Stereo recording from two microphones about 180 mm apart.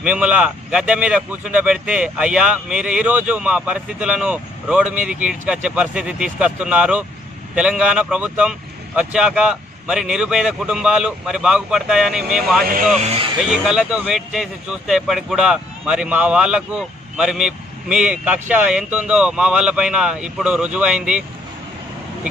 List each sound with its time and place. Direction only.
0.0 s speech: 5° right (ahead or behind)
12.9 s speech: 40° right (ahead or behind)
13.7 s speech: 5° right (ahead or behind)